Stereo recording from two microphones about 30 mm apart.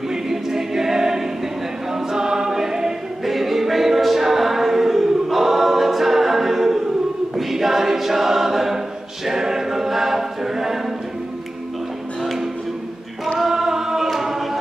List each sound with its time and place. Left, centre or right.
0.1 s choir: centre
1.9 s a capella: centre
3.3 s choir: centre
7.3 s a capella: centre
13.4 s choir: centre